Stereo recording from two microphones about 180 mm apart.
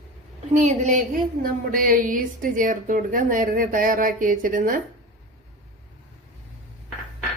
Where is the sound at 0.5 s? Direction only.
45° right (ahead or behind).